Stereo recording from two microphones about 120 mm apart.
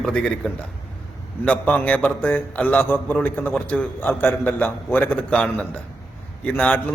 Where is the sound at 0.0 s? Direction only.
5° left (ahead or behind).